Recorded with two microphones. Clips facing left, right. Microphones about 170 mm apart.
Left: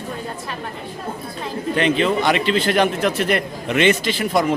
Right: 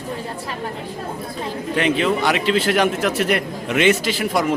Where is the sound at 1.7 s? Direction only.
10° right (ahead or behind).